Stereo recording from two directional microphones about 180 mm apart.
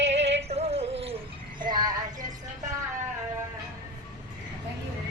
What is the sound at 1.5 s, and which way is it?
Child singing, 25° right (ahead or behind).